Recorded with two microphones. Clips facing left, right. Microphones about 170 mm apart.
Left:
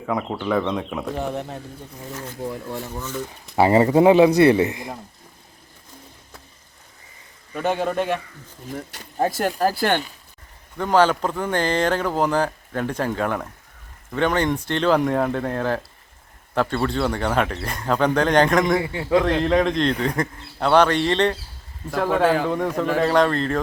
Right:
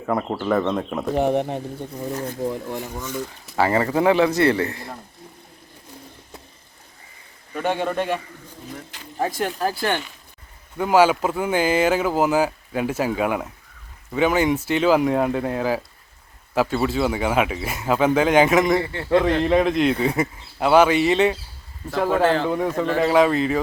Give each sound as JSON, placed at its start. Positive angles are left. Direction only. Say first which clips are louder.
{"t": 0.0, "sound": "speech", "louder": "right 1 dB", "side_deg": -5}
{"t": 1.2, "sound": "speech", "louder": "right 7 dB", "side_deg": -60}
{"t": 2.6, "sound": "speech", "louder": "right 1 dB", "side_deg": -15}
{"t": 3.5, "sound": "speech", "louder": "left 4 dB", "side_deg": 20}
{"t": 7.5, "sound": "speech", "louder": "left 1 dB", "side_deg": 0}
{"t": 9.0, "sound": "speech", "louder": "left 2 dB", "side_deg": 40}
{"t": 10.8, "sound": "speech", "louder": "right 1 dB", "side_deg": -10}
{"t": 18.8, "sound": "a man's voice", "louder": "even", "side_deg": 10}
{"t": 19.1, "sound": "speech", "louder": "right 1 dB", "side_deg": -5}